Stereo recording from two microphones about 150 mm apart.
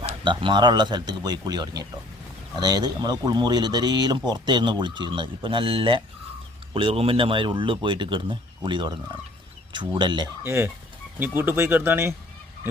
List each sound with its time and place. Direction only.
0.0 s speech: 40° right (ahead or behind)
10.4 s speech: 15° right (ahead or behind)